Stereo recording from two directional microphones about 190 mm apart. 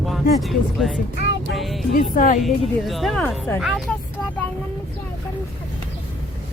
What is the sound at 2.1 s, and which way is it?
Speech, 45° left (ahead or behind).